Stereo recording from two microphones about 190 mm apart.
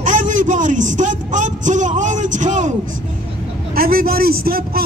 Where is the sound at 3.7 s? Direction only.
50° right (ahead or behind).